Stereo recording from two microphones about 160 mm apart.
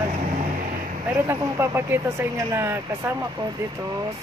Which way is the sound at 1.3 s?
15° right (ahead or behind).